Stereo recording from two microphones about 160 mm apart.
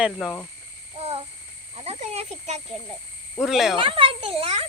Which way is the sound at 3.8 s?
35° right (ahead or behind).